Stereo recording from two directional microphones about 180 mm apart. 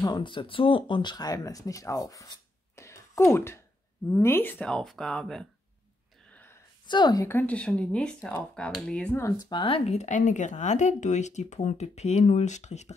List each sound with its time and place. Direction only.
0.0 s speech: 25° left (ahead or behind); by 5.5 s 5° left (ahead or behind)
6.9 s speech: 25° left (ahead or behind); by 12.9 s 40° left (ahead or behind)